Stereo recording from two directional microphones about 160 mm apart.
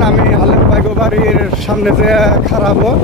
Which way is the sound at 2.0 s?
Centre (ahead or behind).